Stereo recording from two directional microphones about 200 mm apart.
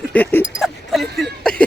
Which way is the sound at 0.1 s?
10° left (ahead or behind).